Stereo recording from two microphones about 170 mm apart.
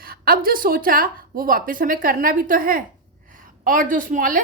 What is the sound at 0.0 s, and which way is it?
A woman's voice, 60° right (ahead or behind).